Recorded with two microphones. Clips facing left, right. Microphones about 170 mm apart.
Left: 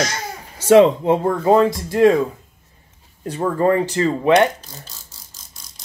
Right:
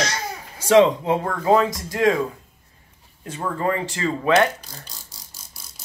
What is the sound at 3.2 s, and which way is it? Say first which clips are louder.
Speech: left 7 dB; 35° left (ahead or behind).